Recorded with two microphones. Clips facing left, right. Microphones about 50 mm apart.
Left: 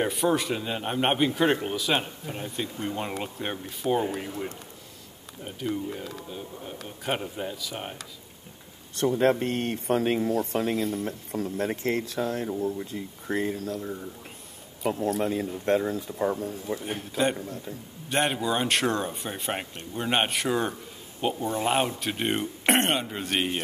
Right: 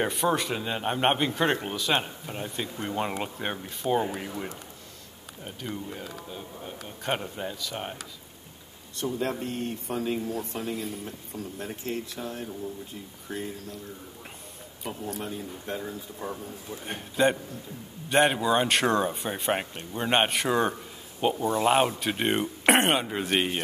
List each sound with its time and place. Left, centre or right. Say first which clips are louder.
0.0 s a man's voice: left 1 dB; centre
5.4 s a man's voice: left 5 dB; centre
8.9 s speech: left 7 dB; left
10.4 s speech: left 6 dB; left
11.3 s speech: left 8 dB; left
14.9 s speech: left 8 dB; left
16.2 s speech: left 10 dB; left
17.2 s a man's voice: right 3 dB; centre